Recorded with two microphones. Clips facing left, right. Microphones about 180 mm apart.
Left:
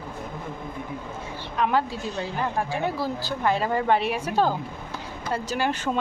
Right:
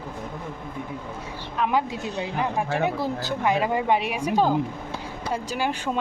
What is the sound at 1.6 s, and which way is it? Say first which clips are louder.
Speech: even; 10° right (ahead or behind).